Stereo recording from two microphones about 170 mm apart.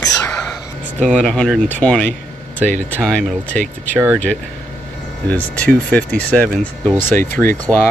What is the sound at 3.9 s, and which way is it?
Speech, 15° right (ahead or behind).